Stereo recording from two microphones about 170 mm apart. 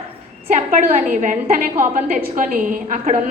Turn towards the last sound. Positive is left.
turn(degrees=-50)  # may be behind; listen again after turning